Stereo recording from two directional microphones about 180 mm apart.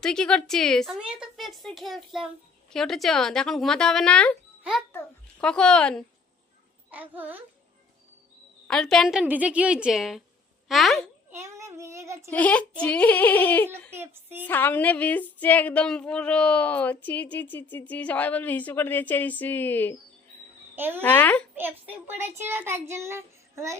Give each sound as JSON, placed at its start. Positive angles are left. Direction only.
{"t": 0.0, "sound": "a woman's voice", "side_deg": 5}
{"t": 6.9, "sound": "a child's voice", "side_deg": -10}
{"t": 8.6, "sound": "a woman's voice", "side_deg": 5}
{"t": 11.3, "sound": "child singing", "side_deg": -15}
{"t": 12.3, "sound": "a sound", "side_deg": 10}
{"t": 13.9, "sound": "a child's voice", "side_deg": -10}
{"t": 14.4, "sound": "a sound", "side_deg": 10}
{"t": 20.7, "sound": "a child's voice", "side_deg": -10}
{"t": 21.0, "sound": "a sound", "side_deg": 10}
{"t": 21.5, "sound": "a child's voice", "side_deg": -10}